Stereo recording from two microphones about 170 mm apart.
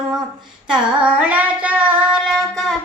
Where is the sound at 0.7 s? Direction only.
10° right (ahead or behind).